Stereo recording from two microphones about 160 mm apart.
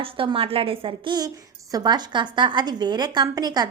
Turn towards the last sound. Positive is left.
turn(degrees=-25)  # may be behind; listen again after turning